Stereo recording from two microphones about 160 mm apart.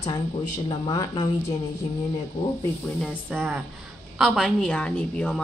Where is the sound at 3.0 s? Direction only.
5° left (ahead or behind).